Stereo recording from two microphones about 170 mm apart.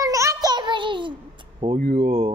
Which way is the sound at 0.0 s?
20° right (ahead or behind).